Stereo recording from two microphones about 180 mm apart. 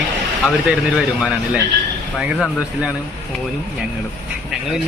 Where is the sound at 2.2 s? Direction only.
5° right (ahead or behind).